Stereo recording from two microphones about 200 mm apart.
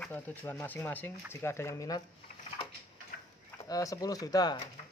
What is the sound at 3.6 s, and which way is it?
Speech, 15° left (ahead or behind).